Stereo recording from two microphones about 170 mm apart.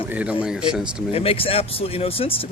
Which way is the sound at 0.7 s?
5° right (ahead or behind).